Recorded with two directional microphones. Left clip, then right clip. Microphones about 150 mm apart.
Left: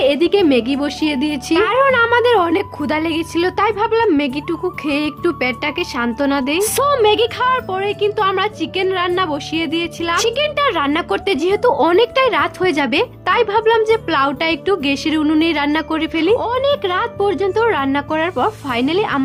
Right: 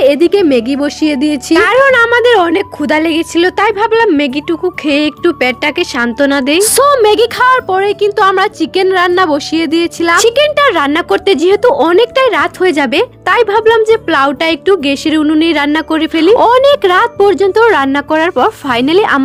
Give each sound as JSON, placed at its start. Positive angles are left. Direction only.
{"t": 0.0, "sound": "a woman's voice", "side_deg": -30}
{"t": 1.8, "sound": "a woman's voice", "side_deg": -25}
{"t": 16.4, "sound": "speech", "side_deg": -55}